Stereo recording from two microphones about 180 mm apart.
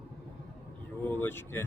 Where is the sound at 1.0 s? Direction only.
10° left (ahead or behind).